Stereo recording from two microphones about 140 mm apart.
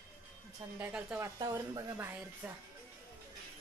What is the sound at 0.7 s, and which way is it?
Speech, 15° right (ahead or behind).